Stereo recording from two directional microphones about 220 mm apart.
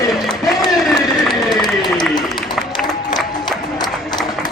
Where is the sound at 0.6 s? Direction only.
Centre (ahead or behind).